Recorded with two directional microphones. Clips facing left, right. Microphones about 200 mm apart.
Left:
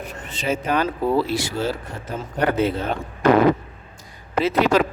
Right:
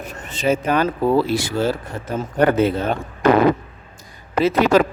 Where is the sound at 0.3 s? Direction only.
45° right (ahead or behind).